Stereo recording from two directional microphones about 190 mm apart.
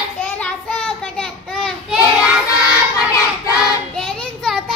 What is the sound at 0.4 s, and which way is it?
Child singing, 5° left (ahead or behind).